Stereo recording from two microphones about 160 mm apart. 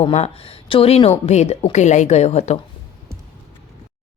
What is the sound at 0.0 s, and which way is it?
A woman's voice, 40° left (ahead or behind).